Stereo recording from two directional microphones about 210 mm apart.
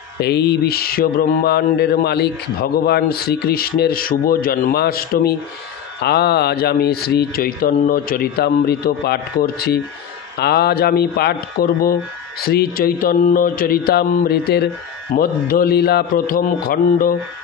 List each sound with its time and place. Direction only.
0.2 s mantra: 50° left (ahead or behind)